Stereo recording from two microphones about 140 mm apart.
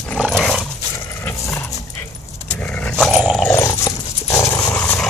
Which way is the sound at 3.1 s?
5° right (ahead or behind).